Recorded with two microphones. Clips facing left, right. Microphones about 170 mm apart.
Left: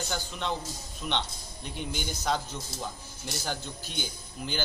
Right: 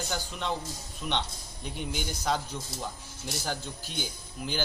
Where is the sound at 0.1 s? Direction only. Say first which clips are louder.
Even; 5° right (ahead or behind).